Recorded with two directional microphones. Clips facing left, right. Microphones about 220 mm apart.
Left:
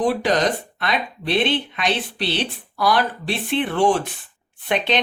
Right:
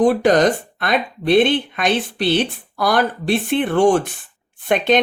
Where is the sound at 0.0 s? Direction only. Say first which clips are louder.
Right 6 dB; 45° right (ahead or behind).